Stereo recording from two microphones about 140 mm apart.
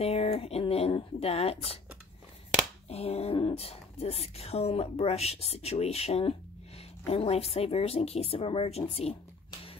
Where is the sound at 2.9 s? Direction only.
45° left (ahead or behind).